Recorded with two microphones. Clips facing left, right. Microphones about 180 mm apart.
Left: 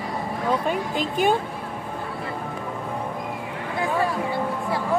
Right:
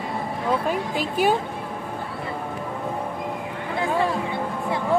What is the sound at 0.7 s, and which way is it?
Speech, 5° right (ahead or behind).